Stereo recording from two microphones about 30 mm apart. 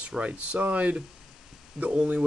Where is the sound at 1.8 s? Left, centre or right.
Right.